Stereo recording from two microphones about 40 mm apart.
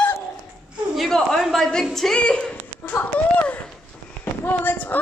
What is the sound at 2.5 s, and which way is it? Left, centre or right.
Speech, left.